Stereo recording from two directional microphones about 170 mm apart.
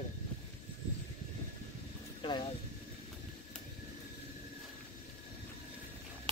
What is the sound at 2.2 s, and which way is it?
Vehicle, 25° left (ahead or behind).